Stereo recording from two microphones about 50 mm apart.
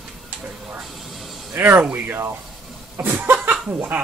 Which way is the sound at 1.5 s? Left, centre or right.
Right.